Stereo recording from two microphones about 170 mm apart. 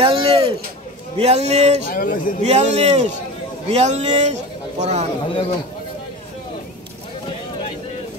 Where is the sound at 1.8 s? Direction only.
55° left (ahead or behind).